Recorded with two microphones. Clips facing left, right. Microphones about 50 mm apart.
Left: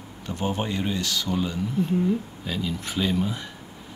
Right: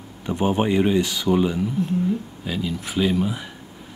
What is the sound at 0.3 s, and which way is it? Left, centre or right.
Speech, centre.